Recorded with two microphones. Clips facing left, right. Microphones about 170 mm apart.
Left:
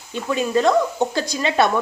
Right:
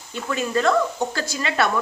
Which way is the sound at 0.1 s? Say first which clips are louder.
Left 4 dB; 20° left (ahead or behind).